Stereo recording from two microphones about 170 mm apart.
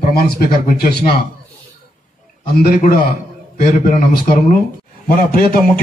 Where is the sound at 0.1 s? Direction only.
65° left (ahead or behind).